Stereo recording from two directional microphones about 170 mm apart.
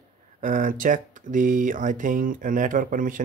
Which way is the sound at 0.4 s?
50° right (ahead or behind).